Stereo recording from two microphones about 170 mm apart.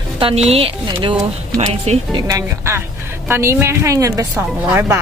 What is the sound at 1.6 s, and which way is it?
Speech, 40° right (ahead or behind).